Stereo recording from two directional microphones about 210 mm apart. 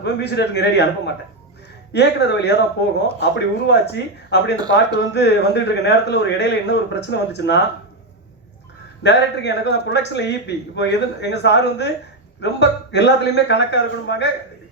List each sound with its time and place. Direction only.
0.0 s a man's voice: 55° left (ahead or behind)
9.0 s a man's voice: 55° left (ahead or behind)